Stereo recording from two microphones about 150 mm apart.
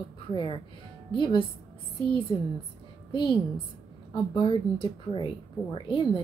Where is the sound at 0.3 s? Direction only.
30° left (ahead or behind).